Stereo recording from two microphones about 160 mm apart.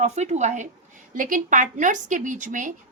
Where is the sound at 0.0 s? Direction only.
45° right (ahead or behind).